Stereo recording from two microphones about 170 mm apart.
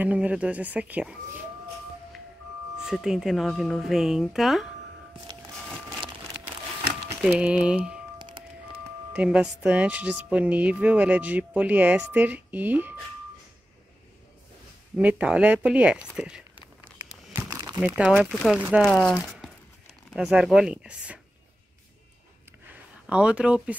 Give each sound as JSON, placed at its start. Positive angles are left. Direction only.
{"t": 0.0, "sound": "speech", "side_deg": -10}
{"t": 2.8, "sound": "speech", "side_deg": -5}
{"t": 5.9, "sound": "a sound", "side_deg": -5}
{"t": 7.2, "sound": "speech", "side_deg": -5}
{"t": 8.2, "sound": "music", "side_deg": -25}
{"t": 9.1, "sound": "speech", "side_deg": -5}
{"t": 15.0, "sound": "speech", "side_deg": -10}
{"t": 17.3, "sound": "crumpling", "side_deg": -15}
{"t": 17.8, "sound": "speech", "side_deg": -5}
{"t": 18.9, "sound": "speech", "side_deg": 5}
{"t": 23.0, "sound": "speech", "side_deg": -5}